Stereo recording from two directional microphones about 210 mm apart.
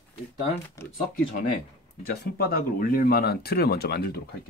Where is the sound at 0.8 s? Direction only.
15° left (ahead or behind).